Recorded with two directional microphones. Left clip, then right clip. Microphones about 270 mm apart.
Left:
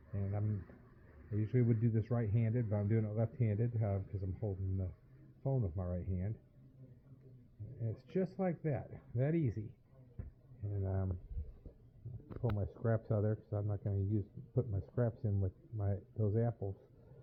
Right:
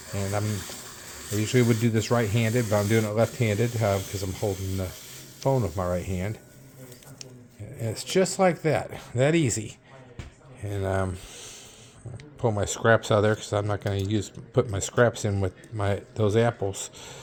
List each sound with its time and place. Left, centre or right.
0.2 s speech: centre
7.8 s speech: centre
10.8 s speech: centre
12.4 s speech: centre